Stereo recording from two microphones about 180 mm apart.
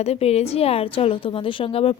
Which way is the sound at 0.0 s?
35° left (ahead or behind).